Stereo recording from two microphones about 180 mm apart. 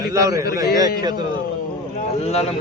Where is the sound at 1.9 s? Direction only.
35° left (ahead or behind).